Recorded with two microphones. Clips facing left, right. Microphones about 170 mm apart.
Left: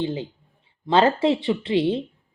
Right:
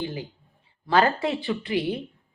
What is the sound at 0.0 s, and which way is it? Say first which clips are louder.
A woman's voice: left 5 dB; 25° left (ahead or behind).